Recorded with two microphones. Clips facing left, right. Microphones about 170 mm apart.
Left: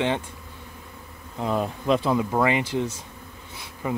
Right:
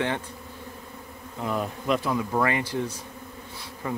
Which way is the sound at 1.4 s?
25° left (ahead or behind).